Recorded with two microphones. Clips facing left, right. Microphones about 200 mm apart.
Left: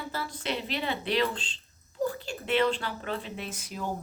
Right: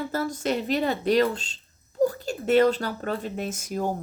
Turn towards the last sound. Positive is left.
turn(degrees=-45)  # may be behind; listen again after turning